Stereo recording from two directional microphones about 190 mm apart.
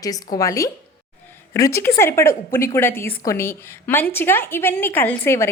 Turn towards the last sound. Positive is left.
turn(degrees=15)  # may be behind; listen again after turning